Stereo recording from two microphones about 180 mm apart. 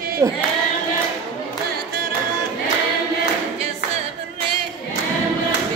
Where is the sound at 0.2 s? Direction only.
15° right (ahead or behind).